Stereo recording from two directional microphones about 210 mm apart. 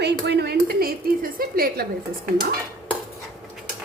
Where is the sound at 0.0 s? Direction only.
55° right (ahead or behind).